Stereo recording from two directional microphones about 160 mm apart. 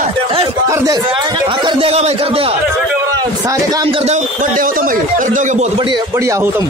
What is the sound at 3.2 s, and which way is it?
Speech, 25° right (ahead or behind).